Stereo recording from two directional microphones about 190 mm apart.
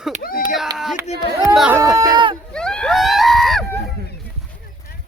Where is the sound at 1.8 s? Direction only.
20° right (ahead or behind).